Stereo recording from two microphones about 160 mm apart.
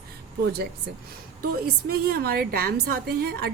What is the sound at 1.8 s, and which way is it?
A woman's voice, 75° right (ahead or behind).